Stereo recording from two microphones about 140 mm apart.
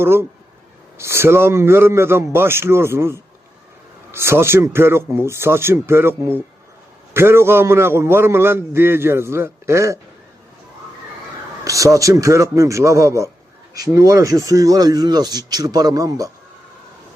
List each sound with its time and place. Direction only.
0.0 s a man's voice: 15° right (ahead or behind)
11.6 s speech: 25° right (ahead or behind)